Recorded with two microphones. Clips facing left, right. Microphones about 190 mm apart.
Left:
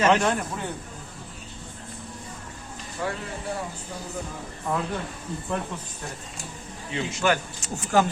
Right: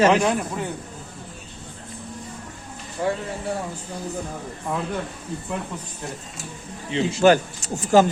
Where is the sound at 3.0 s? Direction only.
25° right (ahead or behind).